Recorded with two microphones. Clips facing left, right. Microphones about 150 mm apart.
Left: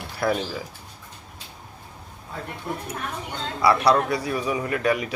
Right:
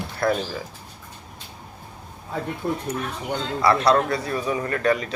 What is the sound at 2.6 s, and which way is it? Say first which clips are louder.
Speech: right 5 dB; 35° right (ahead or behind).